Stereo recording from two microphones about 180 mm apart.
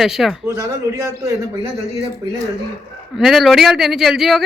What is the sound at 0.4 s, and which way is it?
Speech, 15° right (ahead or behind).